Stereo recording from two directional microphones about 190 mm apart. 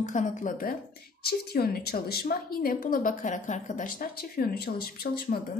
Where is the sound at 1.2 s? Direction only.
55° left (ahead or behind).